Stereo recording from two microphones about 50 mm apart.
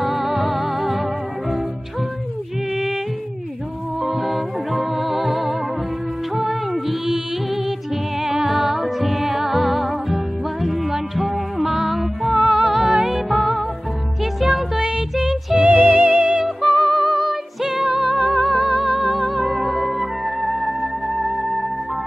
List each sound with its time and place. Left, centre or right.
0.0 s music: centre
4.0 s music: centre
8.2 s music: centre
14.4 s music: centre
15.6 s music: right
16.4 s music: centre